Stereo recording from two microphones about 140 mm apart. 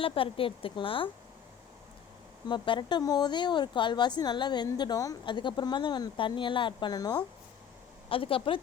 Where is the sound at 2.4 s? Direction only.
35° left (ahead or behind).